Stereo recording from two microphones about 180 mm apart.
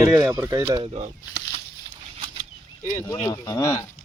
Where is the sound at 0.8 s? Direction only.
35° right (ahead or behind).